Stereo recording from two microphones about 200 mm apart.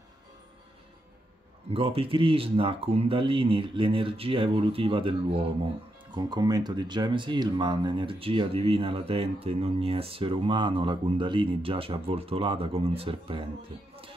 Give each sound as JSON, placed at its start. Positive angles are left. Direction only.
{"t": 1.7, "sound": "speech", "side_deg": -30}